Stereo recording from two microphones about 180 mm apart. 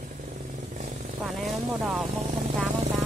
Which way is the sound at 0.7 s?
45° right (ahead or behind).